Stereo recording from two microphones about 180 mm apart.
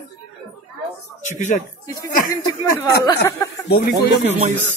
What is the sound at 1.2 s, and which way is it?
Speech, 45° left (ahead or behind).